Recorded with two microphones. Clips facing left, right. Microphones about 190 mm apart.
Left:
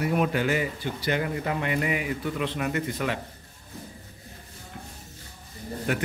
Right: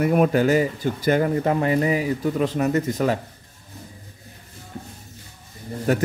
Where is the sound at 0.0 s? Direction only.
50° right (ahead or behind).